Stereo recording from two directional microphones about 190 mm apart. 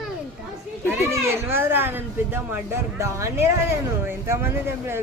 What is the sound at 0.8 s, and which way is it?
A child's voice, 15° right (ahead or behind).